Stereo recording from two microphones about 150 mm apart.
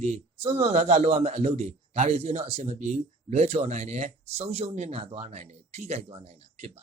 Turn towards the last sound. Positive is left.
turn(degrees=-45)  # may be behind; listen again after turning